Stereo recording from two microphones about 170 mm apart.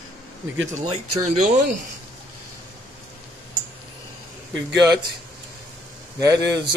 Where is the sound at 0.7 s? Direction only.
45° right (ahead or behind).